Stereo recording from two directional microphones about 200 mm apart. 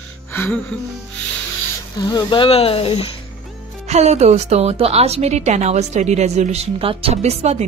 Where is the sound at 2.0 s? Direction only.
20° left (ahead or behind).